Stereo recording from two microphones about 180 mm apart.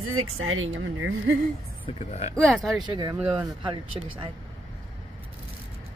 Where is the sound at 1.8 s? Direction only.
35° left (ahead or behind).